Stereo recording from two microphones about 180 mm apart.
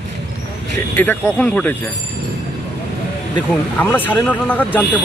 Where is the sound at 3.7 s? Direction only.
10° left (ahead or behind).